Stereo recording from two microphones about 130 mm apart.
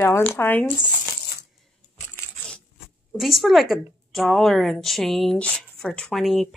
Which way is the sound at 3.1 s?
Centre (ahead or behind).